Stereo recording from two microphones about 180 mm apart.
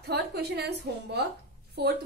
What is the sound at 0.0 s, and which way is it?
A woman's voice, 65° right (ahead or behind).